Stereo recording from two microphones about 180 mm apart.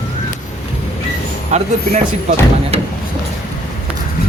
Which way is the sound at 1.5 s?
35° right (ahead or behind).